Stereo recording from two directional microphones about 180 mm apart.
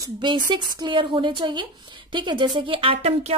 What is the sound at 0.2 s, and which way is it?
A woman's voice, 25° right (ahead or behind).